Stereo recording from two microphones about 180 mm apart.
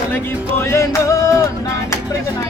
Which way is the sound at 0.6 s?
15° left (ahead or behind).